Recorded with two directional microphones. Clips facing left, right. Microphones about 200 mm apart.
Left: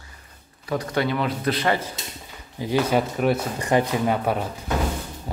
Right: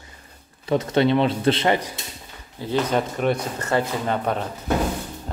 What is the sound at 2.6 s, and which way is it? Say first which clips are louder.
Speech: left 1 dB; 10° left (ahead or behind).